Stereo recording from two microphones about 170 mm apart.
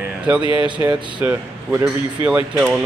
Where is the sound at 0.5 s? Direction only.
30° right (ahead or behind).